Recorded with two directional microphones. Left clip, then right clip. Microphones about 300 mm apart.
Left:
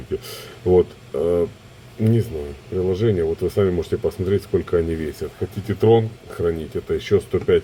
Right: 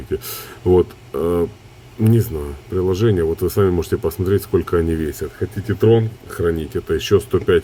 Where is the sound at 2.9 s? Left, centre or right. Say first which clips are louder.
Right 2 dB; right.